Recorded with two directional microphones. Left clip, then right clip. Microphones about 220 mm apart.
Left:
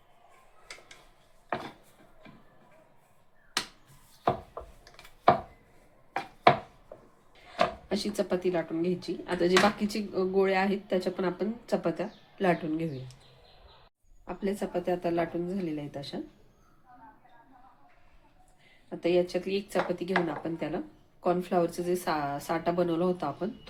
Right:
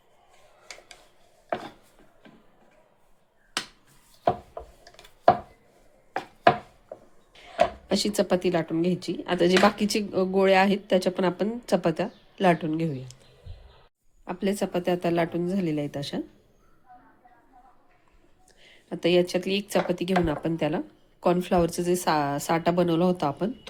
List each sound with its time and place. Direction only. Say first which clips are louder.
7.9 s speech: right 6 dB; 45° right (ahead or behind)
14.3 s speech: right 5 dB; 45° right (ahead or behind)
18.9 s speech: right 4 dB; 45° right (ahead or behind)